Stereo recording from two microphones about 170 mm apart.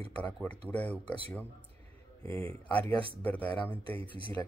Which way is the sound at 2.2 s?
10° left (ahead or behind).